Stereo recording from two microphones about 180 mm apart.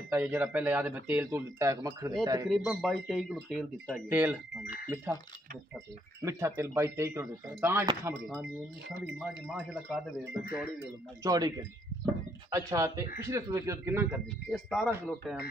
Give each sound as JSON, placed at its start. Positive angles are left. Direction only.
{"t": 0.1, "sound": "speech", "side_deg": -10}
{"t": 2.8, "sound": "speech", "side_deg": 0}
{"t": 4.1, "sound": "speech", "side_deg": -10}
{"t": 6.2, "sound": "speech", "side_deg": -15}
{"t": 8.1, "sound": "speech", "side_deg": -10}
{"t": 11.2, "sound": "speech", "side_deg": -20}
{"t": 14.5, "sound": "speech", "side_deg": 0}